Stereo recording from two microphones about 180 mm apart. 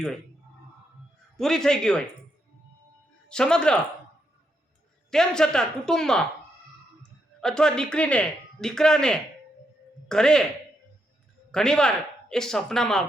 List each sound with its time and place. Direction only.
1.4 s speech: 5° left (ahead or behind)
3.2 s speech: 5° left (ahead or behind)
5.1 s speech: 5° left (ahead or behind)
7.4 s speech: 5° left (ahead or behind)
11.5 s speech: 5° left (ahead or behind)